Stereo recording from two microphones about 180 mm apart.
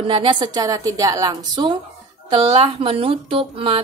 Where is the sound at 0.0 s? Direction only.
30° right (ahead or behind).